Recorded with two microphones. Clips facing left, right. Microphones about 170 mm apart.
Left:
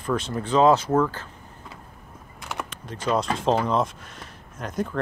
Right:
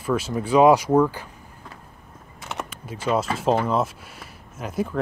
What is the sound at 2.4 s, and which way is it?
Speech, 5° right (ahead or behind).